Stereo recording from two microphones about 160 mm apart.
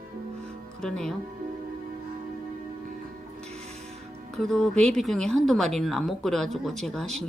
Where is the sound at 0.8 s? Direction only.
5° left (ahead or behind).